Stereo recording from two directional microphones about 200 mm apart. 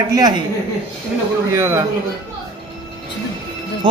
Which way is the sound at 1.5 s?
10° right (ahead or behind).